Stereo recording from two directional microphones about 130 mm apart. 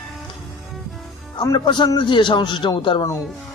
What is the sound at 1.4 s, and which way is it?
Speech, 35° left (ahead or behind).